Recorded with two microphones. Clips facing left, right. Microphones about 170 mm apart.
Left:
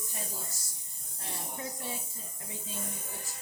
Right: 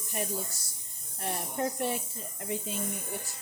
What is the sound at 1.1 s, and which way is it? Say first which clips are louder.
Speech: right 8 dB; 65° right (ahead or behind).